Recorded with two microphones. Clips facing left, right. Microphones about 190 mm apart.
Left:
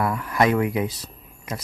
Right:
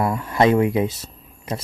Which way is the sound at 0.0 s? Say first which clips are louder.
Right 3 dB; 25° right (ahead or behind).